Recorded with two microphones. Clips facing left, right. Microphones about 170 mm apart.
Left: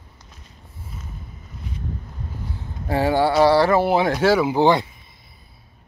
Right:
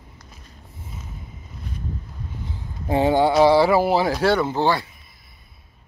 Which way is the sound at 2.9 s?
20° right (ahead or behind).